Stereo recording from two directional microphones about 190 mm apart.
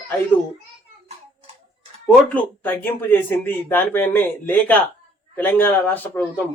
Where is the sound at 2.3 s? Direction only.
10° left (ahead or behind).